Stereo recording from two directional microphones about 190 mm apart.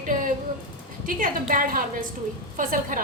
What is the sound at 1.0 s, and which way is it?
A woman's voice, 45° right (ahead or behind).